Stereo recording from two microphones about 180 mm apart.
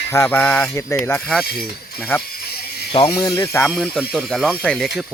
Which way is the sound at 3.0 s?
15° left (ahead or behind).